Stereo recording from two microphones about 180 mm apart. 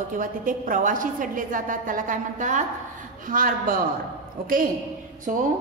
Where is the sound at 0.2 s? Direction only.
50° right (ahead or behind).